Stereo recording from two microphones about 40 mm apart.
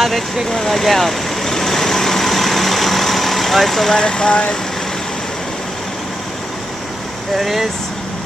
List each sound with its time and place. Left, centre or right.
0.5 s vehicle: centre
3.9 s speech: centre
7.3 s speech: centre